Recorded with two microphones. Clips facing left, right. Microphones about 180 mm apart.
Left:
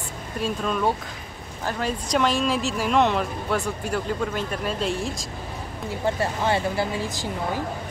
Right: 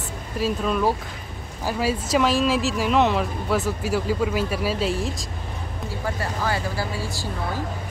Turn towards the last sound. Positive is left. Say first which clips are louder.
# left 2 dB
turn(degrees=20)  # may be behind; listen again after turning